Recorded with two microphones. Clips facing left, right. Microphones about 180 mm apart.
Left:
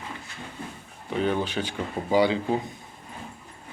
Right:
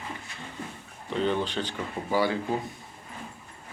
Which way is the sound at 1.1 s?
10° left (ahead or behind).